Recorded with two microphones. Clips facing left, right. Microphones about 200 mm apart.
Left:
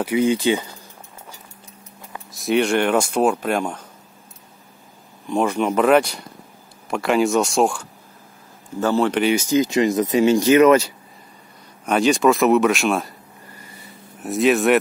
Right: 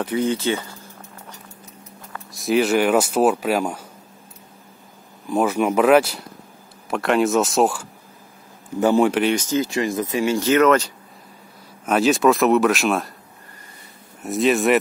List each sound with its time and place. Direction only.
0.0 s speech: 10° left (ahead or behind)
2.3 s speech: centre (ahead or behind)
5.3 s speech: 5° right (ahead or behind)
8.7 s speech: 15° right (ahead or behind)
9.1 s speech: 5° left (ahead or behind)
11.8 s speech: 5° right (ahead or behind)
14.2 s speech: centre (ahead or behind)